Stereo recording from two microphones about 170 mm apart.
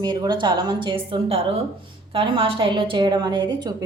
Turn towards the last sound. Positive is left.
turn(degrees=-25)  # may be behind; listen again after turning